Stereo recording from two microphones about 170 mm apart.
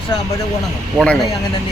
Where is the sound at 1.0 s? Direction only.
5° left (ahead or behind).